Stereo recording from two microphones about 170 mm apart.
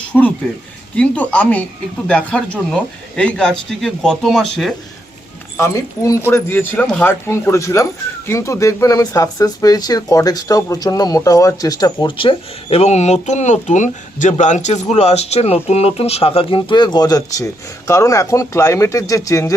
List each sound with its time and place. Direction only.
0.1 s speech: 10° left (ahead or behind)
5.5 s speech: 15° left (ahead or behind)